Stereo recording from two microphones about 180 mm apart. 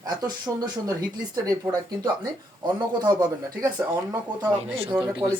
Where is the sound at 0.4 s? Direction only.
20° right (ahead or behind).